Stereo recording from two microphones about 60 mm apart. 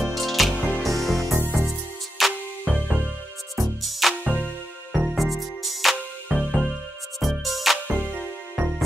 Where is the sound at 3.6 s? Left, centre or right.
Centre.